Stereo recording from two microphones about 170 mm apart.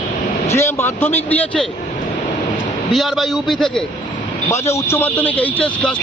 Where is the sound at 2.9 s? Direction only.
Centre (ahead or behind).